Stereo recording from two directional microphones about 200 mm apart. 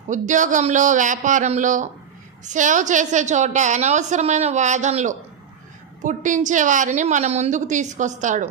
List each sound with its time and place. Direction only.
0.1 s a woman's voice: 40° right (ahead or behind)